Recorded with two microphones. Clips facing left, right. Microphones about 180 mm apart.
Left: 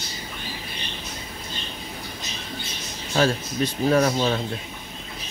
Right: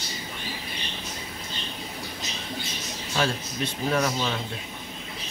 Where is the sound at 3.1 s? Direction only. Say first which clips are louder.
Left 6 dB; 40° left (ahead or behind).